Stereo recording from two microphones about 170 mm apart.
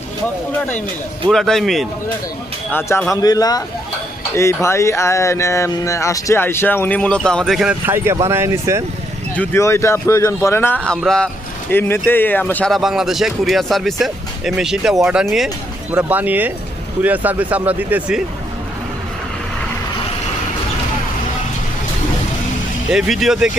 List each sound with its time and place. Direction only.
0.5 s speech: 10° left (ahead or behind)
2.7 s speech: 15° left (ahead or behind); by 8.8 s 15° right (ahead or behind)
9.3 s speech: 10° left (ahead or behind); by 18.2 s 10° right (ahead or behind)
22.9 s speech: 5° right (ahead or behind)